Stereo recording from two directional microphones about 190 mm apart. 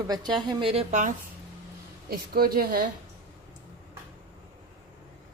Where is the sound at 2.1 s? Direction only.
50° right (ahead or behind).